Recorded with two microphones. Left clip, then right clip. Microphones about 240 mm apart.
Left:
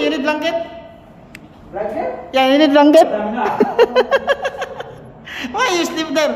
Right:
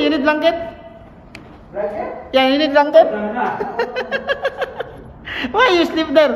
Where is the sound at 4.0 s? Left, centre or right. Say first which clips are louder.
Left 7 dB; centre.